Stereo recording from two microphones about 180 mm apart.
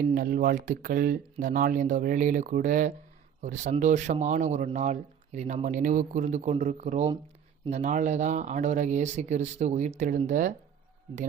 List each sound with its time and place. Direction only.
0.0 s speech: 50° right (ahead or behind)